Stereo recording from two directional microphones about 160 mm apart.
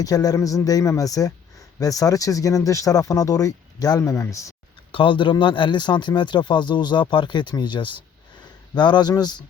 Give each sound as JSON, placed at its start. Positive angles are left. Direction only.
{"t": 0.0, "sound": "speech", "side_deg": 25}
{"t": 4.9, "sound": "speech", "side_deg": 30}